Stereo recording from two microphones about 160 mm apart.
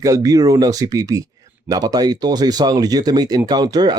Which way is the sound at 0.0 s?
20° right (ahead or behind).